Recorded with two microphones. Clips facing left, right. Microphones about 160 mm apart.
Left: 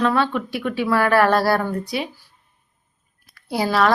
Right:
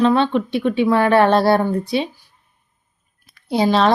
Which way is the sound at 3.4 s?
20° right (ahead or behind).